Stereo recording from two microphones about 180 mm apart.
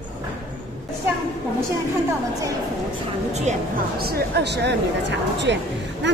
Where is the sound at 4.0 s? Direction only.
65° right (ahead or behind).